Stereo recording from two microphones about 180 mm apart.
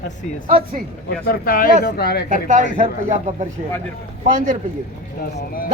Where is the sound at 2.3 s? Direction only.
45° right (ahead or behind).